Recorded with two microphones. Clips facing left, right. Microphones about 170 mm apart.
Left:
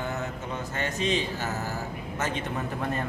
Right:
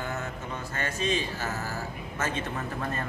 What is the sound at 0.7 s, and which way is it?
A man's voice, 20° left (ahead or behind).